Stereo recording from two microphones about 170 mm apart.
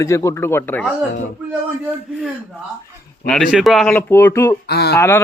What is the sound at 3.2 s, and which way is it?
Speech, 5° left (ahead or behind).